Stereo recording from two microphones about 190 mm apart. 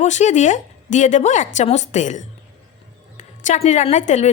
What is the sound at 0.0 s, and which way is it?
A woman's voice, 40° left (ahead or behind).